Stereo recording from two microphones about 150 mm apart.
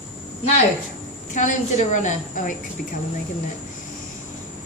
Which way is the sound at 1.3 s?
55° left (ahead or behind).